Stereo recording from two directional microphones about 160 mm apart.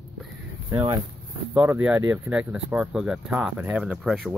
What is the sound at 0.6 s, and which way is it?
Speech, 25° right (ahead or behind).